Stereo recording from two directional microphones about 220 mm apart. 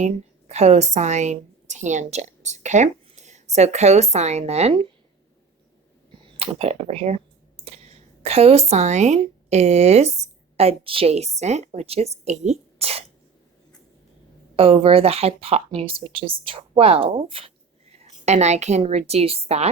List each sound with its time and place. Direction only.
0.0 s a woman's voice: 30° right (ahead or behind)
6.2 s clicking: 25° right (ahead or behind)
8.7 s speech: 30° right (ahead or behind)
14.5 s speech: 25° right (ahead or behind)